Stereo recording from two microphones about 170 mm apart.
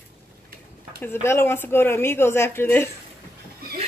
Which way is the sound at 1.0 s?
15° left (ahead or behind).